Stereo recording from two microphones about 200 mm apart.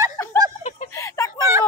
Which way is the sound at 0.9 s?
15° left (ahead or behind).